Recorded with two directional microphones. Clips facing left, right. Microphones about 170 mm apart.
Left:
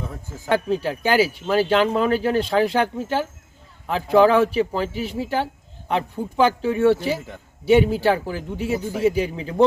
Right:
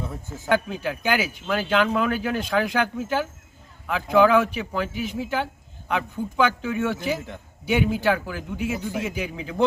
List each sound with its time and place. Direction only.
0.4 s speech: 30° left (ahead or behind)
7.0 s a man's voice: 5° left (ahead or behind)
7.6 s speech: 30° left (ahead or behind)